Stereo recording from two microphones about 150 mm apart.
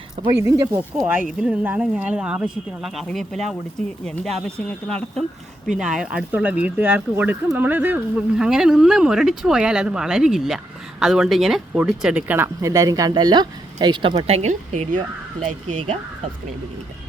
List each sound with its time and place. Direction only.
0.3 s speech: 20° right (ahead or behind)
0.8 s speech: 10° right (ahead or behind); by 15.0 s 50° right (ahead or behind)